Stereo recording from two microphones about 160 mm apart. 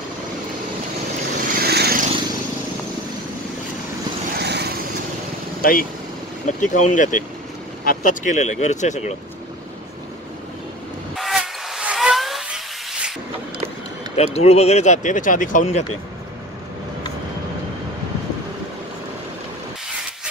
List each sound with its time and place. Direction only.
1.5 s vehicle: 80° right
4.4 s vehicle: 90° right
5.6 s speech: 65° left (ahead or behind)
6.4 s speech: 50° left (ahead or behind)
11.1 s steam whistle: centre (ahead or behind)
14.1 s speech: 40° left (ahead or behind)